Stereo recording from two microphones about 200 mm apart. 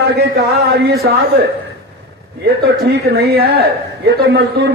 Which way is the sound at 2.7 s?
50° right (ahead or behind).